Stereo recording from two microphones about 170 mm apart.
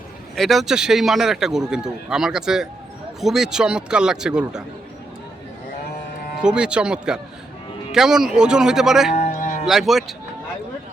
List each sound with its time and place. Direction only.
0.3 s speech: centre (ahead or behind)
6.4 s speech: 5° right (ahead or behind)
9.1 s cattle: 40° left (ahead or behind)
9.6 s speech: centre (ahead or behind)